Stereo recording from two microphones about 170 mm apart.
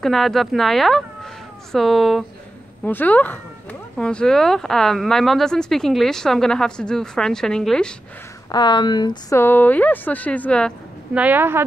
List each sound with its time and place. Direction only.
0.0 s speech: centre (ahead or behind)
8.5 s speech: 25° left (ahead or behind)
9.4 s speech: 10° left (ahead or behind)
11.1 s speech: 10° right (ahead or behind)